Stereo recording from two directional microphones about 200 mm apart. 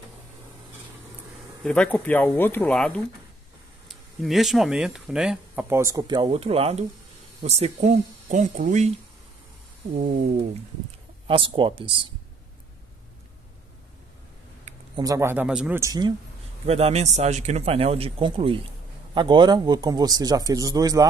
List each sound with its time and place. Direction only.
1.6 s speech: 5° left (ahead or behind); by 8.9 s 35° right (ahead or behind)
9.9 s speech: 35° right (ahead or behind)
15.0 s speech: 15° right (ahead or behind)
16.6 s speech: 30° right (ahead or behind)